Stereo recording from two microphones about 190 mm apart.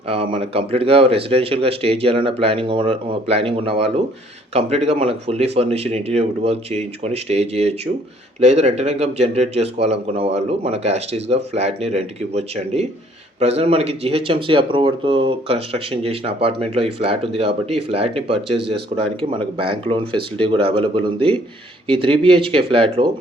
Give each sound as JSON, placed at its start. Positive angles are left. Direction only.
{"t": 0.1, "sound": "speech", "side_deg": -30}